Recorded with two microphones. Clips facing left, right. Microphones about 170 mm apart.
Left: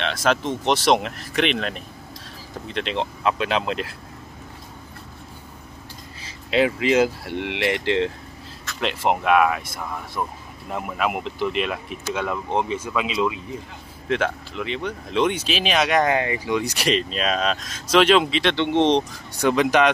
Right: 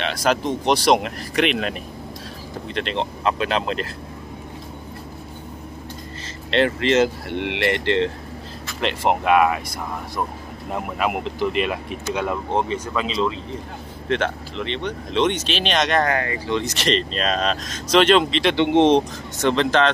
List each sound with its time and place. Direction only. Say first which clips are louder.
0.0 s speech: right 1 dB; centre (ahead or behind)
6.2 s speech: even; 5° left (ahead or behind)
10.7 s speech: right 1 dB; centre (ahead or behind)
16.1 s speech: left 1 dB; 20° left (ahead or behind); by 18.5 s 5° left (ahead or behind)
18.5 s speech: right 4 dB; 15° right (ahead or behind)
19.4 s speech: even; 10° left (ahead or behind)